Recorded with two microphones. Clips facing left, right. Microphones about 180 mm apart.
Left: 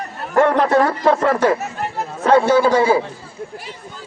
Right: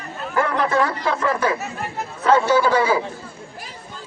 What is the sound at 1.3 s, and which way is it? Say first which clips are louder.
Speech: left 5 dB; 65° left (ahead or behind).